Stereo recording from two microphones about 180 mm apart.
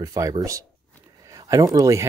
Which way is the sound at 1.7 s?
15° right (ahead or behind).